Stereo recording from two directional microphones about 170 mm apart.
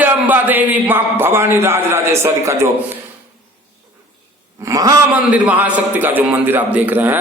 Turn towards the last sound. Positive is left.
turn(degrees=-10)  # may be behind; listen again after turning